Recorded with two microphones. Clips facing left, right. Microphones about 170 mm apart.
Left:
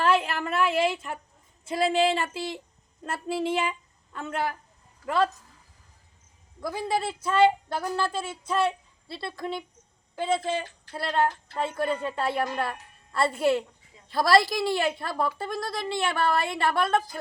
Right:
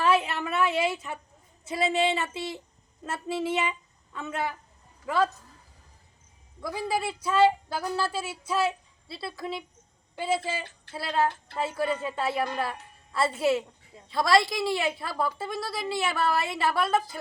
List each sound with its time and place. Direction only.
0.0 s a sound: 5° right (ahead or behind)
1.6 s speech: centre (ahead or behind)
6.6 s speech: centre (ahead or behind)
6.9 s speech: 25° left (ahead or behind)
7.3 s speech: 5° right (ahead or behind)